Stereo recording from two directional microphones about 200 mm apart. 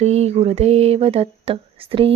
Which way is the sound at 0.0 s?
30° right (ahead or behind).